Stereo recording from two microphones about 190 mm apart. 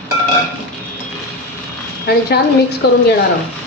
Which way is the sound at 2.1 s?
55° left (ahead or behind).